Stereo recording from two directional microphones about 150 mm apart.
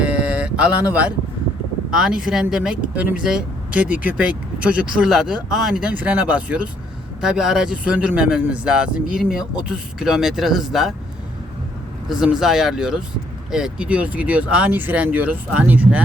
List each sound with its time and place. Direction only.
0.0 s a sound: 5° right (ahead or behind)
1.9 s speech: 5° right (ahead or behind)
12.0 s speech: 5° right (ahead or behind)